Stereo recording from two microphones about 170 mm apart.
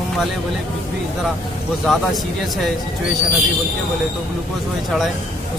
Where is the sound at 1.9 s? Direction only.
Centre (ahead or behind).